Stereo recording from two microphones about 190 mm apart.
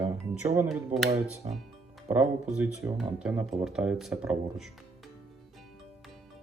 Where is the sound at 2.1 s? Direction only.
5° right (ahead or behind).